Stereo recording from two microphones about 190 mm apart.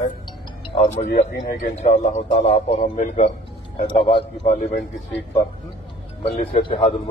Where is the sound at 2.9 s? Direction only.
45° left (ahead or behind).